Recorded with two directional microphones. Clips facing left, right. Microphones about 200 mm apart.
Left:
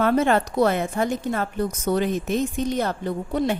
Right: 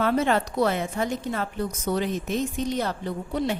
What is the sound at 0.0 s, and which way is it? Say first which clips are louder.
A woman's voice: left 3 dB; 50° left (ahead or behind).